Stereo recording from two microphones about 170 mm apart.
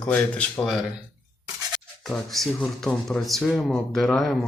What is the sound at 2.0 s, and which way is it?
Speech, centre (ahead or behind).